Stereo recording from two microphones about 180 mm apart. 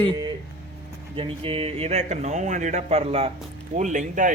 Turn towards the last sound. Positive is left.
turn(degrees=-45)  # may be behind; listen again after turning